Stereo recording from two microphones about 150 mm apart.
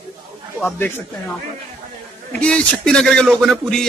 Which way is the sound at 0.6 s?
10° left (ahead or behind).